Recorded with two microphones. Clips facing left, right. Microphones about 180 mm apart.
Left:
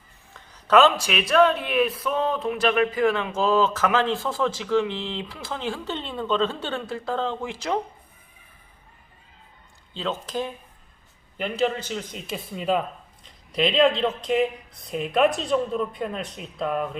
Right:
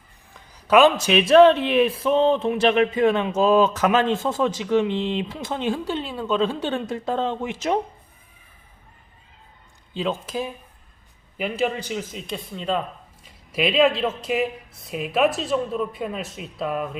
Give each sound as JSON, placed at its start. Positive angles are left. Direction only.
{"t": 0.3, "sound": "speech", "side_deg": -10}
{"t": 9.9, "sound": "a man's voice", "side_deg": -10}
{"t": 12.1, "sound": "speech", "side_deg": 5}
{"t": 13.2, "sound": "speech", "side_deg": -5}